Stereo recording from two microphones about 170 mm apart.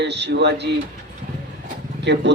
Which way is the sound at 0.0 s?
85° right.